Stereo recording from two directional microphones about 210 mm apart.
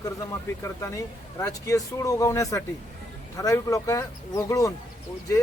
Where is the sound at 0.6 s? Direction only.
15° left (ahead or behind).